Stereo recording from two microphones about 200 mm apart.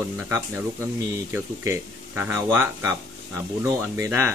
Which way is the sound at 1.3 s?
10° right (ahead or behind).